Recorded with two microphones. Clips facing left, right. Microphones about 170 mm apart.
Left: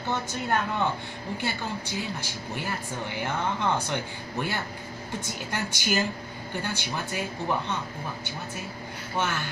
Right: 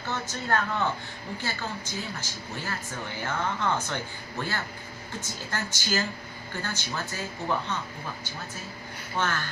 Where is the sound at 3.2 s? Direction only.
15° left (ahead or behind).